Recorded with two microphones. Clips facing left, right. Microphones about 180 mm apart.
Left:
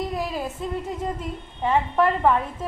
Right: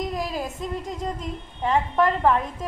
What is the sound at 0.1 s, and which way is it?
A woman's voice, 5° left (ahead or behind).